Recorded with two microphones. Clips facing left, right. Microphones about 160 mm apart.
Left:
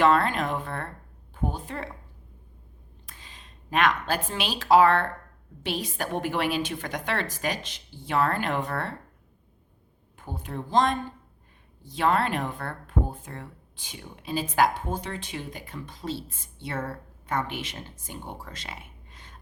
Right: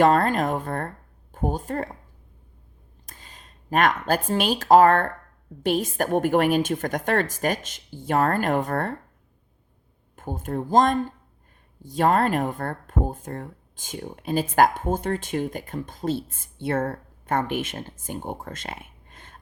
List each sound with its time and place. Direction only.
0.0 s speech: 45° right (ahead or behind)
3.1 s speech: 45° right (ahead or behind)
10.2 s speech: 45° right (ahead or behind)